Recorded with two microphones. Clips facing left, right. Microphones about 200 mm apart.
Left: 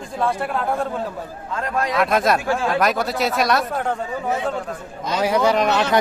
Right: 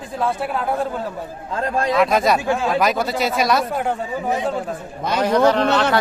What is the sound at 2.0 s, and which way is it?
Speech, centre (ahead or behind).